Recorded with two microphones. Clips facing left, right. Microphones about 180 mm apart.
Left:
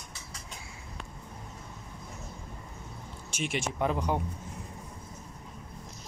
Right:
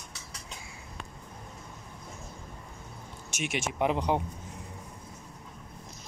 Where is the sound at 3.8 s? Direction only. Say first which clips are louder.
Right 3 dB; 20° right (ahead or behind).